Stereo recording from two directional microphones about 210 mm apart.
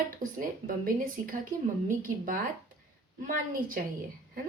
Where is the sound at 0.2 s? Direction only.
40° right (ahead or behind).